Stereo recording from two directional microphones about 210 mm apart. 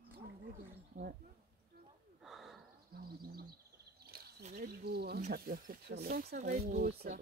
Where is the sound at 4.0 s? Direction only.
50° right (ahead or behind).